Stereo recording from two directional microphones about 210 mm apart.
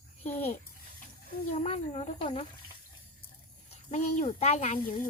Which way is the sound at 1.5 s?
30° left (ahead or behind).